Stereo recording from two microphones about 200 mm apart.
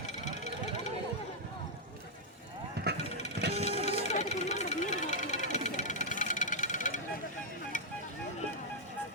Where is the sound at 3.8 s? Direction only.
35° left (ahead or behind).